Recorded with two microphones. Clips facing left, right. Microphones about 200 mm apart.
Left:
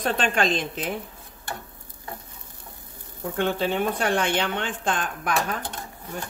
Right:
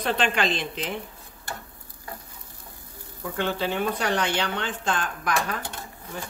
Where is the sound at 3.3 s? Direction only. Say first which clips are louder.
Left 2 dB; 50° left (ahead or behind).